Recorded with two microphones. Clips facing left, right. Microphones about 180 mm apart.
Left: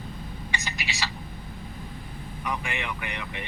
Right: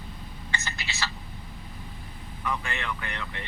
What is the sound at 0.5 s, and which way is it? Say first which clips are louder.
Speech: left 1 dB; 15° left (ahead or behind).